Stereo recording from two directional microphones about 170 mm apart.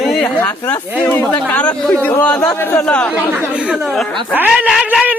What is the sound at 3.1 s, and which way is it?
Speech, 10° right (ahead or behind).